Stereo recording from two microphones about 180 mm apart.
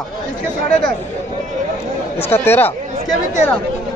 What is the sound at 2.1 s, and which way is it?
Speech, 15° left (ahead or behind).